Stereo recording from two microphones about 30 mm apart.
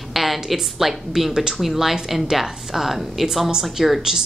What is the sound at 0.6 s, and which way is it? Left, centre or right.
Speech, centre.